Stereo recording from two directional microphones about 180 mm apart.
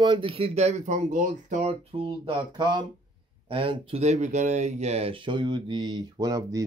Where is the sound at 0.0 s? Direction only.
25° right (ahead or behind).